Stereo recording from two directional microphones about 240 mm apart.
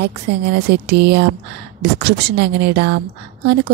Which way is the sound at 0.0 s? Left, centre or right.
Right.